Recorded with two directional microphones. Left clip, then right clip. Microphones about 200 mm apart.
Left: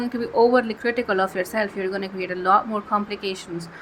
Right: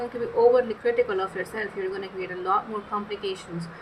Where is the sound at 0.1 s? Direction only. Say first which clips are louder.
Left 2 dB; 50° left (ahead or behind).